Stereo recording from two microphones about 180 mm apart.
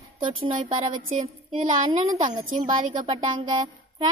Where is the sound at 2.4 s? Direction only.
25° right (ahead or behind).